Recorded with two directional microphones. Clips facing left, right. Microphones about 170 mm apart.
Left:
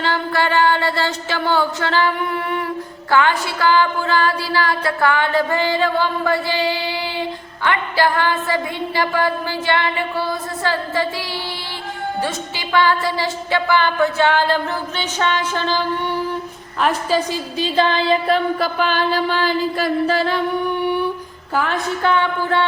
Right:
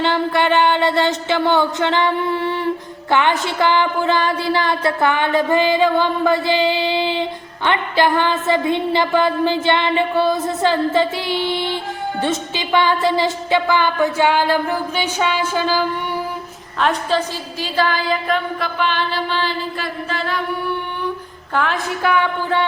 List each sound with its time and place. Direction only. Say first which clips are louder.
0.0 s a sound: right 3 dB; 20° right (ahead or behind)
12.2 s speech: right 3 dB; 20° right (ahead or behind)
16.8 s a woman's voice: even; 10° left (ahead or behind); by 20.4 s 35° left (ahead or behind)
20.8 s a sound: left 7 dB; 10° left (ahead or behind)
21.5 s a woman's voice: even; 5° left (ahead or behind)
22.0 s speech: right 1 dB; 10° right (ahead or behind)